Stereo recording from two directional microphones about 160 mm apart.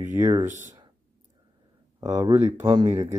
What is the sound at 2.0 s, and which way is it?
Speech, 20° right (ahead or behind).